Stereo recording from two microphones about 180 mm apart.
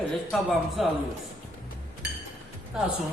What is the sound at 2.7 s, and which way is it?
Speech, 5° right (ahead or behind).